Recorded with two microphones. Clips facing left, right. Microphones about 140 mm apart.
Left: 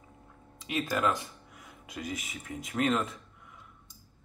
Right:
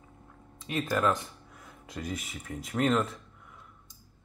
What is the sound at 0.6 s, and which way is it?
Speech, 20° left (ahead or behind).